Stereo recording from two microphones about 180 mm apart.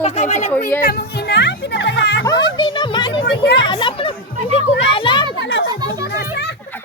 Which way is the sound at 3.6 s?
25° left (ahead or behind).